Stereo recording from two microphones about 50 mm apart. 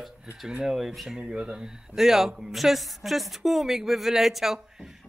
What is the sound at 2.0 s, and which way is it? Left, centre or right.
A man's voice, centre.